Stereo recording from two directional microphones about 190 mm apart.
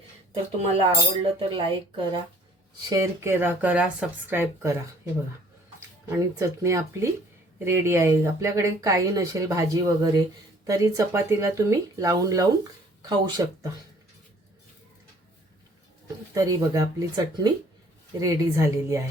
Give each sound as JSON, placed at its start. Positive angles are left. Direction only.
{"t": 0.7, "sound": "speech", "side_deg": -30}
{"t": 2.9, "sound": "speech", "side_deg": -15}
{"t": 6.6, "sound": "speech", "side_deg": -15}
{"t": 16.3, "sound": "speech", "side_deg": -20}